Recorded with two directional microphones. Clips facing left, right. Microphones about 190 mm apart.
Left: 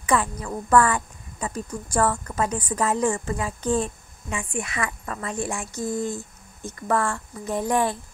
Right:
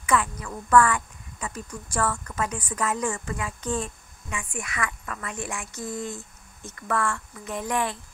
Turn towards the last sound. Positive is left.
turn(degrees=35)  # may be behind; listen again after turning